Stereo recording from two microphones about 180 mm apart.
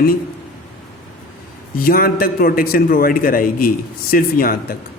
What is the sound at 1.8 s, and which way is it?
A man's voice, 55° left (ahead or behind).